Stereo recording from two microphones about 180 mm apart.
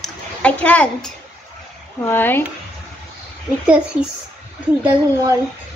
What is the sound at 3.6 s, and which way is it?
Speech, 5° right (ahead or behind).